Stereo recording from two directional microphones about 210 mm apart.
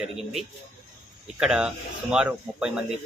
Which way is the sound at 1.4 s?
5° right (ahead or behind).